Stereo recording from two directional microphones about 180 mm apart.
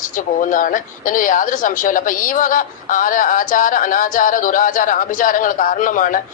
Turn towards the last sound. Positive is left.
turn(degrees=45)  # may be behind; listen again after turning